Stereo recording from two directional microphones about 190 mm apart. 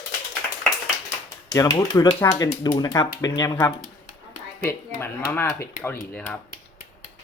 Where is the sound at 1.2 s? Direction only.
20° left (ahead or behind).